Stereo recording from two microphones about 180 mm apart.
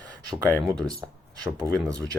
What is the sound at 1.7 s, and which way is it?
Speech, 20° right (ahead or behind).